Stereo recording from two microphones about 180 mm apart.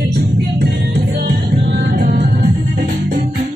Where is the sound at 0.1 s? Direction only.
70° right (ahead or behind).